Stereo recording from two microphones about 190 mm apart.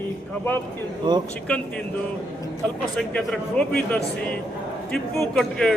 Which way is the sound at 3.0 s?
5° left (ahead or behind).